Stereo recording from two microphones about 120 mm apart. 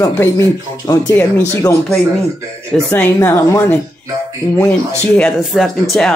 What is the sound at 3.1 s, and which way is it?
Speech, 25° left (ahead or behind).